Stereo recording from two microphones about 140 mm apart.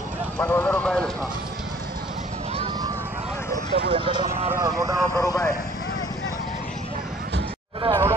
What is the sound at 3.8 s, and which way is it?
Speech, 40° right (ahead or behind).